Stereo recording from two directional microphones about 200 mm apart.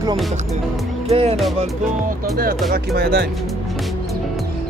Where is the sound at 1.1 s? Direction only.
30° right (ahead or behind).